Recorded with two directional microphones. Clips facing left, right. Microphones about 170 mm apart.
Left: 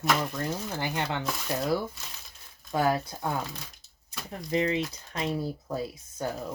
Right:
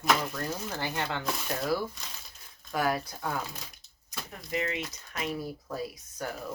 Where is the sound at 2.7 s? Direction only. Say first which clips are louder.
Left 3 dB; 25° left (ahead or behind).